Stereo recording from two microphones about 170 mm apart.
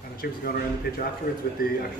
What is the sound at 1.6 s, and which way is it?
Speech, 60° left (ahead or behind).